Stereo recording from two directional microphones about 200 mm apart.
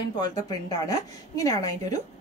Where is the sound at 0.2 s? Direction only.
20° left (ahead or behind).